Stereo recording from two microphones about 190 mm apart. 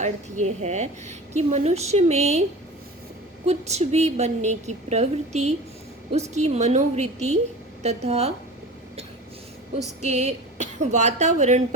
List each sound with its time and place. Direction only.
0.0 s a woman's voice: 40° right (ahead or behind)
3.4 s a woman's voice: 35° right (ahead or behind)
10.0 s a woman's voice: 35° right (ahead or behind)